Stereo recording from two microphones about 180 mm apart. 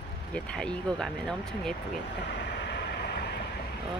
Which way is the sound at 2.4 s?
70° left (ahead or behind).